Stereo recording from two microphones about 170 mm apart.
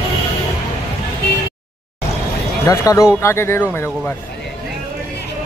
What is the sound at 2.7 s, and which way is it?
Speech, 20° left (ahead or behind).